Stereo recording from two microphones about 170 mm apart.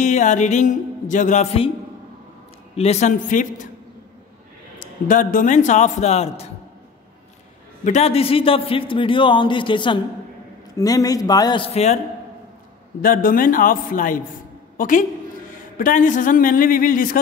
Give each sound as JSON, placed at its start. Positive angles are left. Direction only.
{"t": 0.0, "sound": "a man's voice", "side_deg": 45}
{"t": 2.7, "sound": "a man's voice", "side_deg": 40}
{"t": 4.7, "sound": "a man's voice", "side_deg": 50}
{"t": 7.8, "sound": "a man's voice", "side_deg": 40}
{"t": 13.0, "sound": "a man's voice", "side_deg": 55}